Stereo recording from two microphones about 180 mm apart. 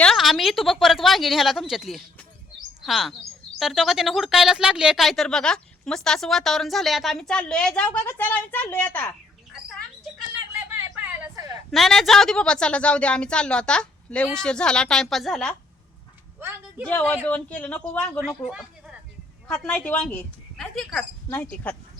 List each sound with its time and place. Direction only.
0.0 s speech: centre (ahead or behind)
10.8 s a sound: 15° right (ahead or behind)
11.7 s speech: centre (ahead or behind)
16.4 s speech: 10° right (ahead or behind)
16.8 s a woman's voice: 10° left (ahead or behind)
18.2 s speech: 5° right (ahead or behind)
19.5 s a woman's voice: 5° left (ahead or behind)